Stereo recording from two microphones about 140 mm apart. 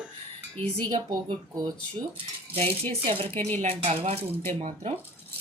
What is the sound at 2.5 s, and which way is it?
Dishes, 45° right (ahead or behind).